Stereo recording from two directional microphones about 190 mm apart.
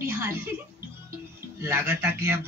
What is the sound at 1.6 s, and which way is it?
Speech, 10° right (ahead or behind).